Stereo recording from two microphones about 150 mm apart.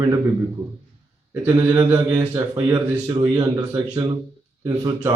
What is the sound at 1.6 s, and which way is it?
A man's voice, 25° right (ahead or behind).